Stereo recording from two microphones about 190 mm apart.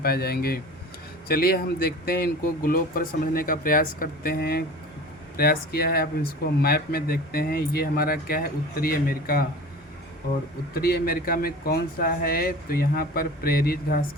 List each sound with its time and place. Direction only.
0.0 s speech: 55° left (ahead or behind)
10.8 s speech: 55° left (ahead or behind)